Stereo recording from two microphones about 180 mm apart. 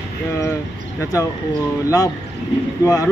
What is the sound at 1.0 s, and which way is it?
Speech, 20° left (ahead or behind).